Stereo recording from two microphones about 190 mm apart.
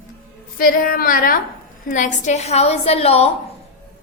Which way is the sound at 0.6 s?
50° left (ahead or behind).